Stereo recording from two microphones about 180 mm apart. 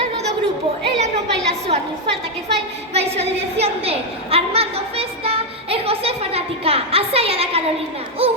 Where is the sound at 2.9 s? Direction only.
35° right (ahead or behind).